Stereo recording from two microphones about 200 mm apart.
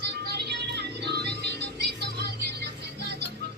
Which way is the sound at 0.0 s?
55° right (ahead or behind).